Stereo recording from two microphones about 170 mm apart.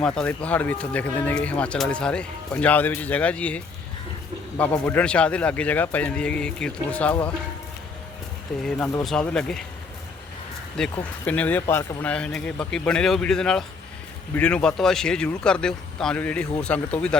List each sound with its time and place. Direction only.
0.2 s speech: 10° left (ahead or behind)
8.9 s speech: 5° left (ahead or behind)
10.8 s speech: 5° left (ahead or behind)